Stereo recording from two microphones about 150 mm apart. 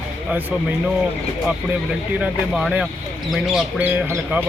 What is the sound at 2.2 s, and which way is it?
Speech, 5° right (ahead or behind).